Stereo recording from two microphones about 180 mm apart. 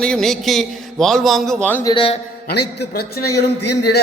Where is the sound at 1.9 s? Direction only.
30° left (ahead or behind).